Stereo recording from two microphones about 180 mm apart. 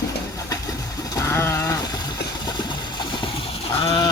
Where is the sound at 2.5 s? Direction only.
25° left (ahead or behind).